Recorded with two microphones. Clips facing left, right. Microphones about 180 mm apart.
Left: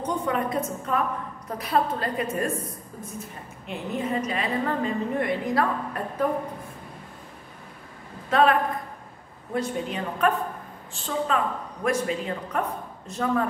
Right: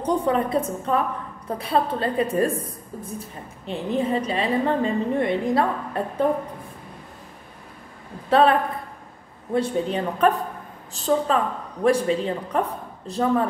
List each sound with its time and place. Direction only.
0.0 s a woman's voice: 35° right (ahead or behind)
8.3 s a man's voice: 30° right (ahead or behind)